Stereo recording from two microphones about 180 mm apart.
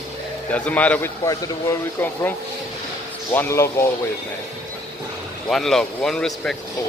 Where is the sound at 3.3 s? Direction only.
15° left (ahead or behind).